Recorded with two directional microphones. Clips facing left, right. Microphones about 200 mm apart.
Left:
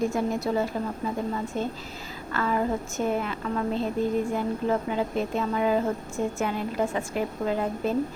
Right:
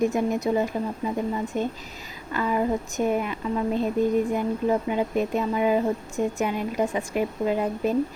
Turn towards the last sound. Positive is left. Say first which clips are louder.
# right 2 dB
turn(degrees=-15)  # may be behind; listen again after turning